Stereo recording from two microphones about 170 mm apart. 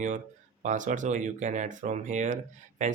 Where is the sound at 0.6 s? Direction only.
45° right (ahead or behind).